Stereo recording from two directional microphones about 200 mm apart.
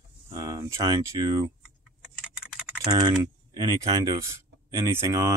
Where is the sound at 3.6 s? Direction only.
20° right (ahead or behind).